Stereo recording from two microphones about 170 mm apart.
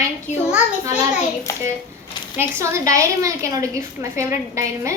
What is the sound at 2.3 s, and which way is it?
A woman's voice, 15° right (ahead or behind).